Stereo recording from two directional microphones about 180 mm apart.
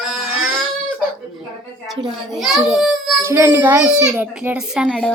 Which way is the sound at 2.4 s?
Centre (ahead or behind).